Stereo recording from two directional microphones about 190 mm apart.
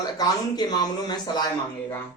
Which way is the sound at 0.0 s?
20° left (ahead or behind).